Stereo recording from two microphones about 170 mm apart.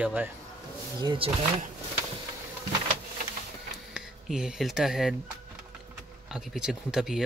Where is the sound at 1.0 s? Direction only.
30° right (ahead or behind).